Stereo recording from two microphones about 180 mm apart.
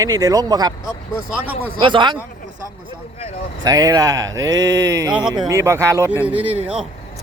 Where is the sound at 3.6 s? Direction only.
20° right (ahead or behind).